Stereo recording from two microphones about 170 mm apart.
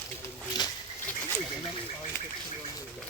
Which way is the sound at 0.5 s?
20° left (ahead or behind).